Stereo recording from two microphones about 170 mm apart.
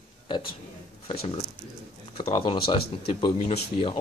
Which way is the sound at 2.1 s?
30° left (ahead or behind).